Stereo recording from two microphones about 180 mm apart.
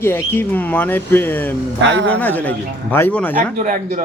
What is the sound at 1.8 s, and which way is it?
Speech, 90° right.